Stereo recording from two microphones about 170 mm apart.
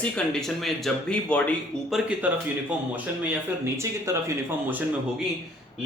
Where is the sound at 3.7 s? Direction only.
15° right (ahead or behind).